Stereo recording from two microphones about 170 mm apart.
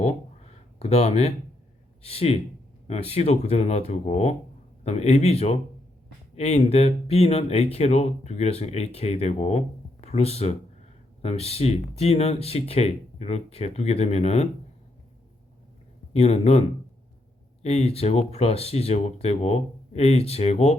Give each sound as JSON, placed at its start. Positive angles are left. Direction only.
{"t": 0.8, "sound": "speech", "side_deg": 40}
{"t": 16.1, "sound": "speech", "side_deg": 40}